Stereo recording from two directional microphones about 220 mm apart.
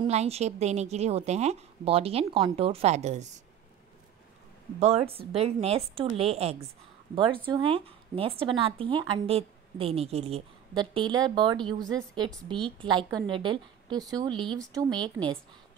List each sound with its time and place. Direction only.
0.0 s a woman's voice: 30° right (ahead or behind)
4.7 s a woman's voice: 30° right (ahead or behind)